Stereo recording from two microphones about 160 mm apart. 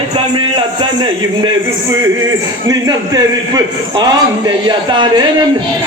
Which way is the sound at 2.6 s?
25° right (ahead or behind).